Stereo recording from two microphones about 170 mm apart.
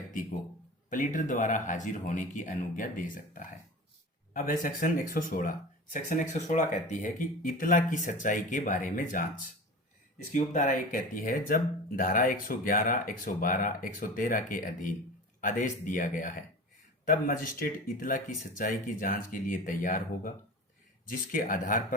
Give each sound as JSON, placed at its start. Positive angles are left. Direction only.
{"t": 0.9, "sound": "speech", "side_deg": 50}
{"t": 4.6, "sound": "speech", "side_deg": 50}